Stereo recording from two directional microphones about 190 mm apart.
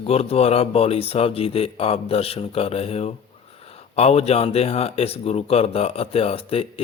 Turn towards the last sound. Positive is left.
turn(degrees=30)  # may be behind; listen again after turning